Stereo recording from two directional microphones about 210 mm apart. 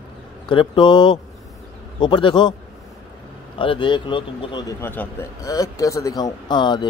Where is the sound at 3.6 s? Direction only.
25° left (ahead or behind).